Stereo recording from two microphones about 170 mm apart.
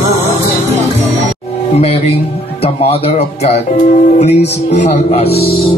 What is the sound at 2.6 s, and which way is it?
Speech, 35° left (ahead or behind).